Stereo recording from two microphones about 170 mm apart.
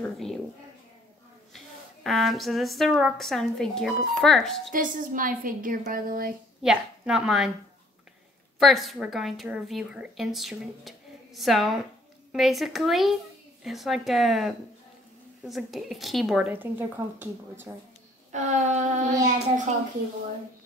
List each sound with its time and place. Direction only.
0.0 s a woman's voice: centre (ahead or behind)
2.0 s a woman's voice: centre (ahead or behind)
4.7 s a woman's voice: 55° right (ahead or behind)
6.6 s a woman's voice: 5° right (ahead or behind)
8.5 s a woman's voice: centre (ahead or behind)
18.3 s child singing: 45° right (ahead or behind)